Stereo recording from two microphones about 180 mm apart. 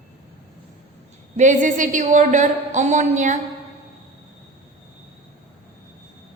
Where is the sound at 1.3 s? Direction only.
45° right (ahead or behind).